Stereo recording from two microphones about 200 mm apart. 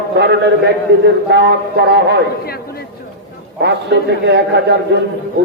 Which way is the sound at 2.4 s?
50° left (ahead or behind).